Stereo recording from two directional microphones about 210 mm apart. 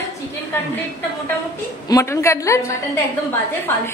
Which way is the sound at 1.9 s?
15° left (ahead or behind).